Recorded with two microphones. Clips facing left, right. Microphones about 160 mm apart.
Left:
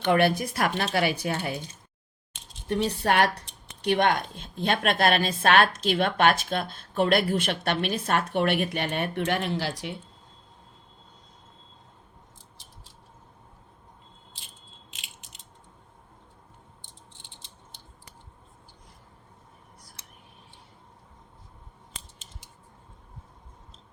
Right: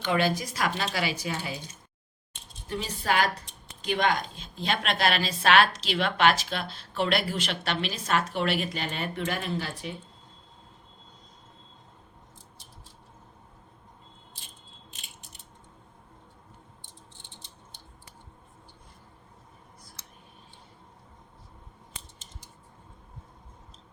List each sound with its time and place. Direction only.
0.0 s speech: 60° left (ahead or behind)
2.3 s speech: 70° left (ahead or behind)
14.9 s a sound: 90° left